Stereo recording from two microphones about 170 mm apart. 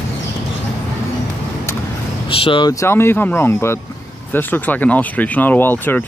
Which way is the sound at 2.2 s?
30° left (ahead or behind).